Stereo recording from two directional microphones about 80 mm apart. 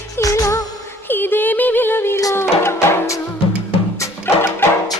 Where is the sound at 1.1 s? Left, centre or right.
Left.